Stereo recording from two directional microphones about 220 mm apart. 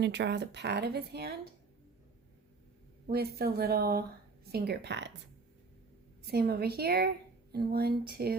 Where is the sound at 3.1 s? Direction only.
45° right (ahead or behind).